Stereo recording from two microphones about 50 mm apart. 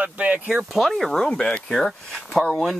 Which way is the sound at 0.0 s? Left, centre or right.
Right.